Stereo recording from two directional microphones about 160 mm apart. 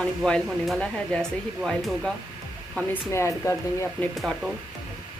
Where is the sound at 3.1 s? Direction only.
15° left (ahead or behind).